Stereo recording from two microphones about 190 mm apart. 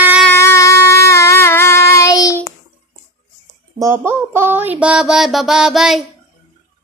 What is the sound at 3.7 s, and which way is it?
Mantra, 15° right (ahead or behind).